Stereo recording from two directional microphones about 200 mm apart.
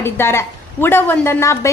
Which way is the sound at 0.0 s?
10° left (ahead or behind).